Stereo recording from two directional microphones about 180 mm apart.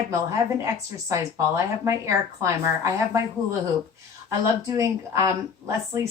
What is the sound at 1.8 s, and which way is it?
A woman's voice, 15° right (ahead or behind).